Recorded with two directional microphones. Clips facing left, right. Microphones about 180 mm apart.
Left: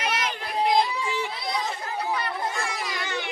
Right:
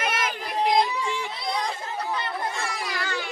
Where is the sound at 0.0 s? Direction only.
50° right (ahead or behind).